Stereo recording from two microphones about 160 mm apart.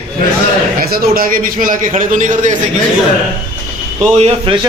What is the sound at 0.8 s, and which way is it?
A man's voice, 65° right (ahead or behind).